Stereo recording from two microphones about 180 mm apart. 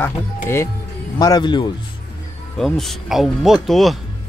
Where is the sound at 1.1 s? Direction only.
25° left (ahead or behind).